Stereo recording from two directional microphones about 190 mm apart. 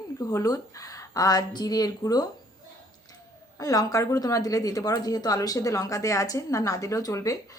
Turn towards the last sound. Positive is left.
turn(degrees=15)  # may be behind; listen again after turning